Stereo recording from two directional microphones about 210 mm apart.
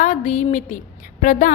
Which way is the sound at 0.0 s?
35° left (ahead or behind).